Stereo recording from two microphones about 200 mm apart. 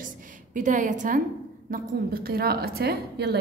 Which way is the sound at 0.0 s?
40° right (ahead or behind).